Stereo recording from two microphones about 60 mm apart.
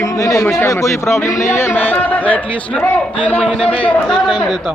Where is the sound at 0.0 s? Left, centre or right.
Left.